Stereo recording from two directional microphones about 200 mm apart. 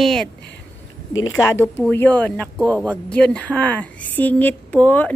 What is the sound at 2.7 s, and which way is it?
Speech, 10° right (ahead or behind).